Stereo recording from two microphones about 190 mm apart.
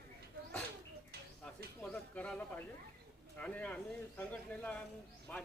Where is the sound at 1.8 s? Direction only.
5° left (ahead or behind).